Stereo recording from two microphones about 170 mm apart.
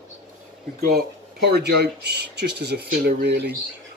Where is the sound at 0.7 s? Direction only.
65° right (ahead or behind).